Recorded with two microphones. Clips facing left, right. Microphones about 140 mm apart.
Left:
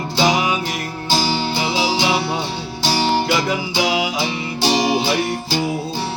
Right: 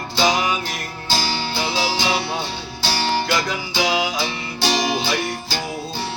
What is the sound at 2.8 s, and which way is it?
Music, 15° left (ahead or behind).